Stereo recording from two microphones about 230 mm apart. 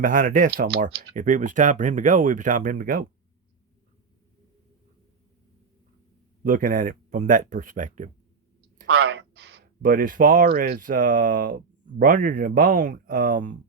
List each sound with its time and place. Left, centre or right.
0.0 s speech: right
1.1 s speech: right
6.4 s speech: right
8.8 s speech: right